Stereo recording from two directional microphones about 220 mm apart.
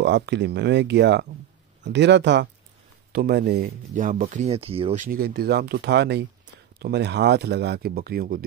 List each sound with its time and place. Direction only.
0.0 s speech: 55° right (ahead or behind)